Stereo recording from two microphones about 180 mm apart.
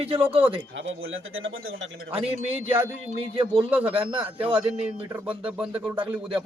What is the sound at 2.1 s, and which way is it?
A man's voice, 35° right (ahead or behind).